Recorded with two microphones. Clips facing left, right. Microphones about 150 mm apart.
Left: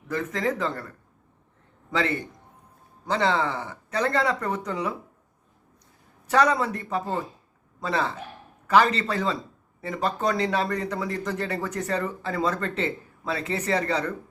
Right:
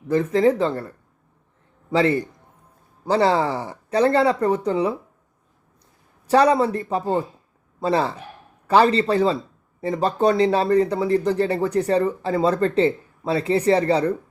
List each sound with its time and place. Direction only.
0.1 s speech: 30° right (ahead or behind)
6.2 s speech: 30° right (ahead or behind)